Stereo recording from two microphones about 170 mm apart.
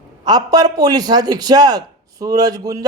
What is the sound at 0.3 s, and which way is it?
A man's voice, 25° right (ahead or behind).